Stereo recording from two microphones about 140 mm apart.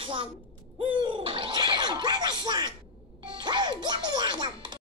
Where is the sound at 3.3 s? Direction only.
35° right (ahead or behind).